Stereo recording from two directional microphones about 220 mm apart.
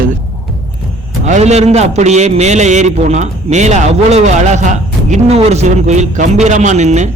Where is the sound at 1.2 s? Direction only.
30° right (ahead or behind).